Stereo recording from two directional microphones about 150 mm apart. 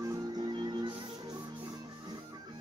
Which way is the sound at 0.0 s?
20° right (ahead or behind).